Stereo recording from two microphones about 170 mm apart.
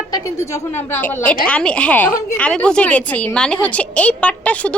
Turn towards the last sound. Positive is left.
turn(degrees=10)  # may be behind; listen again after turning